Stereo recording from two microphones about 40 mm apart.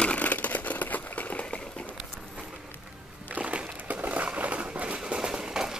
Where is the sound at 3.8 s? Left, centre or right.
Right.